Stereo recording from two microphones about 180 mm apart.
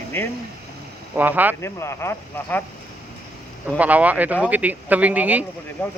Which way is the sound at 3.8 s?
10° right (ahead or behind).